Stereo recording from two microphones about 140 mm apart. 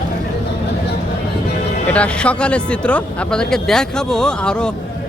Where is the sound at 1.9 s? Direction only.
10° left (ahead or behind).